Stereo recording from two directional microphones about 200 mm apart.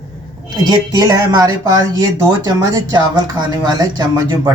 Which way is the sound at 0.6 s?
20° right (ahead or behind).